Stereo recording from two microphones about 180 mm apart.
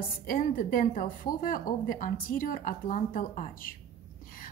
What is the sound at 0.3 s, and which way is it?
A woman's voice, 50° left (ahead or behind).